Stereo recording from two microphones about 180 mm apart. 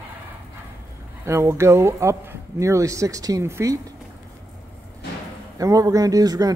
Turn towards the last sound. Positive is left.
turn(degrees=-20)  # may be behind; listen again after turning